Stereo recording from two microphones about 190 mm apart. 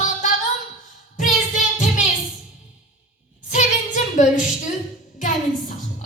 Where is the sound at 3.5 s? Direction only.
40° left (ahead or behind).